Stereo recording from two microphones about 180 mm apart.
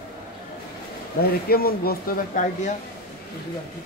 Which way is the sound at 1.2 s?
55° left (ahead or behind).